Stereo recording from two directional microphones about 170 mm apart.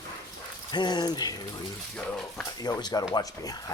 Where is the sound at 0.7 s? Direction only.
25° left (ahead or behind).